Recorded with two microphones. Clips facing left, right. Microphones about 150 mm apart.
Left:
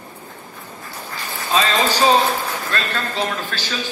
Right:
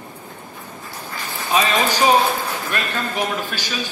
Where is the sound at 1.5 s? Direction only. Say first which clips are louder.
Even; 15° right (ahead or behind).